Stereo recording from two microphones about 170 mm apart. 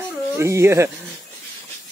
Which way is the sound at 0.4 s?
15° right (ahead or behind).